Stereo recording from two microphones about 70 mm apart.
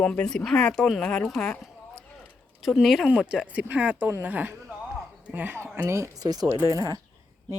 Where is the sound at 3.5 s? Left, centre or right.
Right.